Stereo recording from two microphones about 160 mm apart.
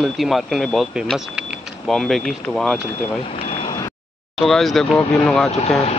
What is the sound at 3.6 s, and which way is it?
Vehicle, 25° left (ahead or behind).